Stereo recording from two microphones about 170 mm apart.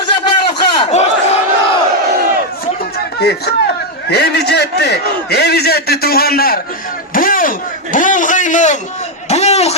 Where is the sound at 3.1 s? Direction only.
70° left (ahead or behind).